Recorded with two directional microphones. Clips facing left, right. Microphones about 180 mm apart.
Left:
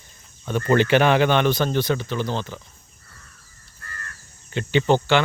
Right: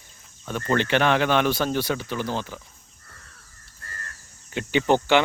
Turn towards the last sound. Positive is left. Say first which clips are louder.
# left 1 dB
turn(degrees=-15)  # may be behind; listen again after turning